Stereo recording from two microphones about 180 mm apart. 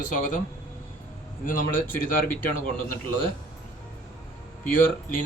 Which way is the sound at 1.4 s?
50° left (ahead or behind).